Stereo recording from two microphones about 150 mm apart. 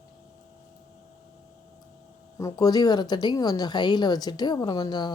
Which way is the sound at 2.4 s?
25° left (ahead or behind).